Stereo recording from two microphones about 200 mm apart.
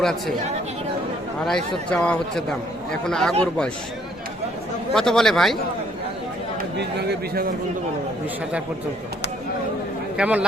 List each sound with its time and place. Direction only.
0.0 s a man's voice: centre (ahead or behind)
1.5 s a man's voice: 5° left (ahead or behind)
4.9 s a man's voice: centre (ahead or behind)
6.7 s a man's voice: 55° right (ahead or behind)
10.2 s speech: 5° right (ahead or behind)